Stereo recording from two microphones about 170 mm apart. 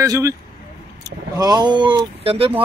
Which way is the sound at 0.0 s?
20° right (ahead or behind).